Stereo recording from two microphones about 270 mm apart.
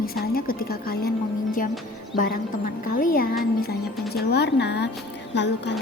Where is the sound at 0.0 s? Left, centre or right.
Left.